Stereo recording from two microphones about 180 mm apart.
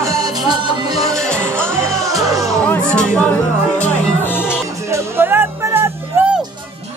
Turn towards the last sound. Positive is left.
turn(degrees=-10)  # may be behind; listen again after turning